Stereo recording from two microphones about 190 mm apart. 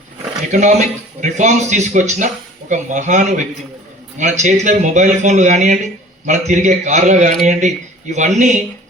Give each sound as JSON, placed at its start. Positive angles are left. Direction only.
{"t": 0.5, "sound": "speech", "side_deg": -40}